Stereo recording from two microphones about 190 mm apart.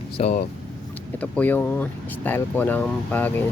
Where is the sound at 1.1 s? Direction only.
10° left (ahead or behind).